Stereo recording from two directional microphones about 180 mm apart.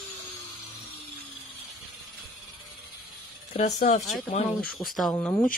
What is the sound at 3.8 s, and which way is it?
Speech, 40° left (ahead or behind).